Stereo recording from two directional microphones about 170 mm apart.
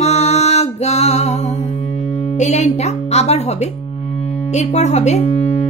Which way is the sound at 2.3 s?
45° left (ahead or behind).